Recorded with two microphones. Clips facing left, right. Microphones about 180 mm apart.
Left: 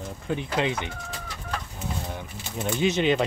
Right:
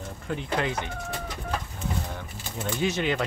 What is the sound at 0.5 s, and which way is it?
Speech, 20° left (ahead or behind).